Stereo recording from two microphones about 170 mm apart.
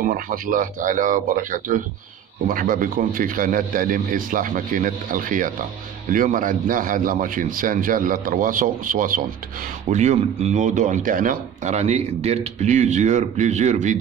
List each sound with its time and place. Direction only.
0.1 s speech: 50° right (ahead or behind)
9.8 s speech: 45° right (ahead or behind)